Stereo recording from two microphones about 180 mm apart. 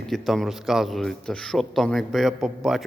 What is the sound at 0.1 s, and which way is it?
A man's voice, centre (ahead or behind).